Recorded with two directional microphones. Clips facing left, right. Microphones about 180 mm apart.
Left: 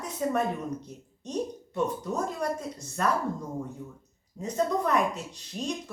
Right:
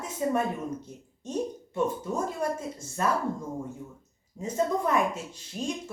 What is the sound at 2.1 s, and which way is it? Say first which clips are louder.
Speech: even; 25° right (ahead or behind).